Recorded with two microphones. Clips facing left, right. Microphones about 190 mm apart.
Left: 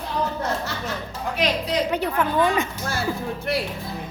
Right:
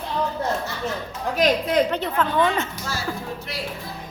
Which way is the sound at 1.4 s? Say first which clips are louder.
Right 4 dB; 50° right (ahead or behind).